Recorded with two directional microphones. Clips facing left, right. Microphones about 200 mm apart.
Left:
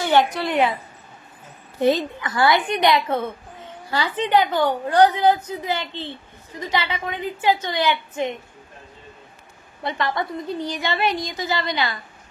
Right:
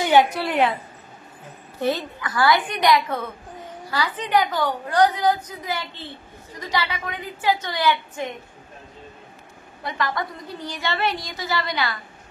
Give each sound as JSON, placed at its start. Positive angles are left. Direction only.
{"t": 0.0, "sound": "a woman's voice", "side_deg": -10}
{"t": 1.8, "sound": "a woman's voice", "side_deg": 20}
{"t": 9.8, "sound": "a woman's voice", "side_deg": 25}